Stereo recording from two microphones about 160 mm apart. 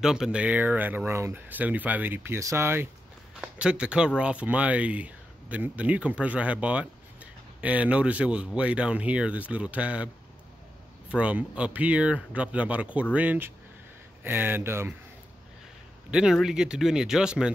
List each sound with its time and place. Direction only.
0.0 s speech: 5° right (ahead or behind)
11.1 s speech: 5° right (ahead or behind)
16.1 s speech: 5° right (ahead or behind)